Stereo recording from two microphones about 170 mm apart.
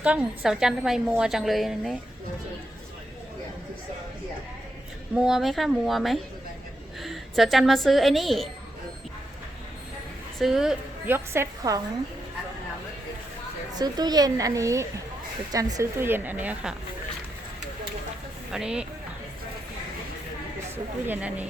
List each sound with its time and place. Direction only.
0.0 s a woman's voice: 5° right (ahead or behind)
5.1 s a woman's voice: 5° right (ahead or behind)
10.3 s a woman's voice: centre (ahead or behind); by 11.8 s 15° right (ahead or behind)
13.7 s a child's voice: 25° right (ahead or behind)
18.5 s a woman's voice: 5° right (ahead or behind)
21.1 s a woman's voice: 10° right (ahead or behind)